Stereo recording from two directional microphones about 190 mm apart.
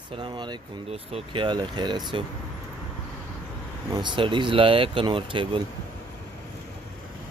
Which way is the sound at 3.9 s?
25° right (ahead or behind).